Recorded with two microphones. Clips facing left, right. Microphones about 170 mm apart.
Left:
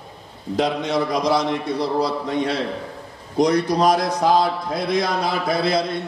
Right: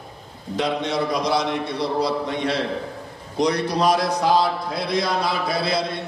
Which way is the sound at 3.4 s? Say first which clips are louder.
Left 3 dB; 45° left (ahead or behind).